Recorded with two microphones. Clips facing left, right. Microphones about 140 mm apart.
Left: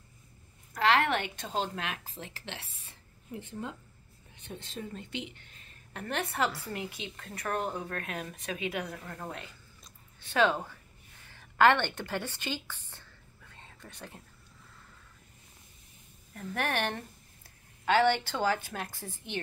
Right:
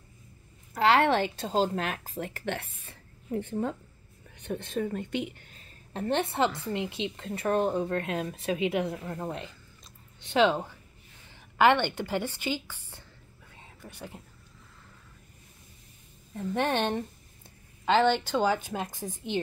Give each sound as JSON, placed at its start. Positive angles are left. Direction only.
{"t": 0.7, "sound": "a woman's voice", "side_deg": -30}
{"t": 13.5, "sound": "whispering", "side_deg": -10}
{"t": 16.3, "sound": "a woman's voice", "side_deg": -20}